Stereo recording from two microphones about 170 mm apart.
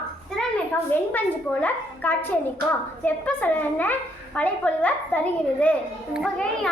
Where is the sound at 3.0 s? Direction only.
10° left (ahead or behind).